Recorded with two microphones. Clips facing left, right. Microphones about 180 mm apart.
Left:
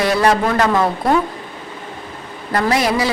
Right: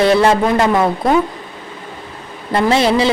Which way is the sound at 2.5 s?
25° right (ahead or behind).